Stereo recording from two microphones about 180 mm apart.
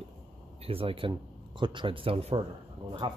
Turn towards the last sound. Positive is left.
turn(degrees=-25)  # may be behind; listen again after turning